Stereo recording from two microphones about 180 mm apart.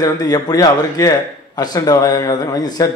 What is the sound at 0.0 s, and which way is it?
A man's voice, 20° left (ahead or behind).